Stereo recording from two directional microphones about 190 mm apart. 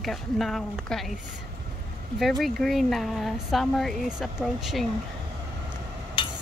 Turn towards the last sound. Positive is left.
turn(degrees=25)  # may be behind; listen again after turning